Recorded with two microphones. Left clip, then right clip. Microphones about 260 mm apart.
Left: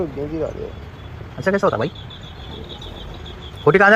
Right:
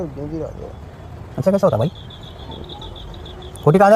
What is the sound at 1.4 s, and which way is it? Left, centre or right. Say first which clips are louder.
Speech: right 2 dB; right.